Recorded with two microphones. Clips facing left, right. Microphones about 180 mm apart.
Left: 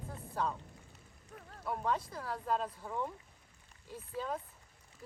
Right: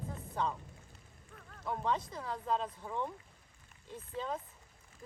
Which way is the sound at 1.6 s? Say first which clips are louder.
Even; 5° left (ahead or behind).